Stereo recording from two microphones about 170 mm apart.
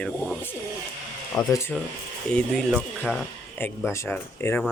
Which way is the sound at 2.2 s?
5° left (ahead or behind).